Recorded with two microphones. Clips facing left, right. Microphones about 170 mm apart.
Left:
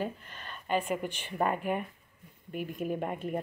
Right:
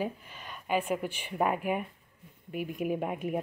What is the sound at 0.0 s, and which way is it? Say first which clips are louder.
Speech: right 1 dB; 10° right (ahead or behind).